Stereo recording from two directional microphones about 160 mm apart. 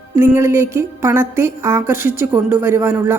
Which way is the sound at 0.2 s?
20° right (ahead or behind).